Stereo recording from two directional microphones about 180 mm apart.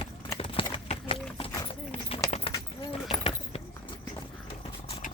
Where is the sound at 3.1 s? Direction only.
30° left (ahead or behind).